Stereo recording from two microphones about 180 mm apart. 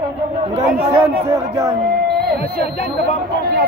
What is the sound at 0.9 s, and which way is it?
Speech, 15° right (ahead or behind).